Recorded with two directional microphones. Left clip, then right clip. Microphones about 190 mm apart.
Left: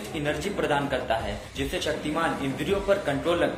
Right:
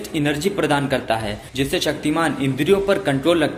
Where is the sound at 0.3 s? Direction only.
40° right (ahead or behind).